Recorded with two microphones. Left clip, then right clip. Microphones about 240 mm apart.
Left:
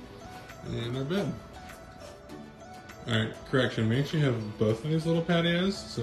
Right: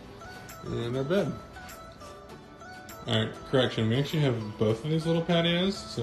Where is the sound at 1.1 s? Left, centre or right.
Centre.